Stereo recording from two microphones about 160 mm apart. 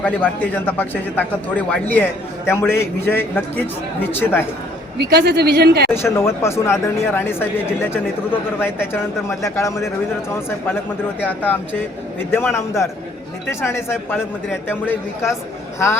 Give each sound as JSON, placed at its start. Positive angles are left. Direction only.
{"t": 0.5, "sound": "speech", "side_deg": 10}
{"t": 4.9, "sound": "speech", "side_deg": -85}
{"t": 5.9, "sound": "speech", "side_deg": 15}